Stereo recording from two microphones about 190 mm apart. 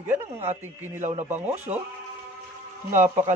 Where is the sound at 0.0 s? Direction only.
10° right (ahead or behind).